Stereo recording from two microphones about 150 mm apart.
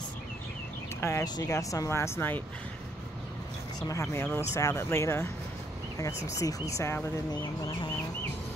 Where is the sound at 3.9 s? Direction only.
20° left (ahead or behind).